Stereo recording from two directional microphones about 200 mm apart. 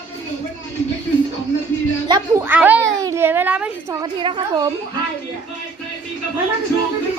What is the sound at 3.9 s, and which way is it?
Speech, 25° right (ahead or behind).